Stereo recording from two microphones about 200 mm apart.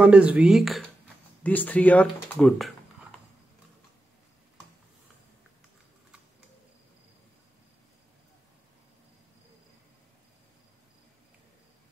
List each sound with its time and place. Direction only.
0.0 s speech: 5° right (ahead or behind)